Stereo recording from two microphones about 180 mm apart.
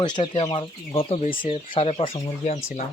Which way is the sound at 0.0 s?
25° left (ahead or behind).